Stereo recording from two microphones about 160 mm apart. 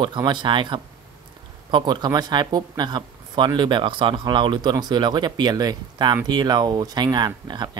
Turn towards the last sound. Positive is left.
turn(degrees=-25)  # may be behind; listen again after turning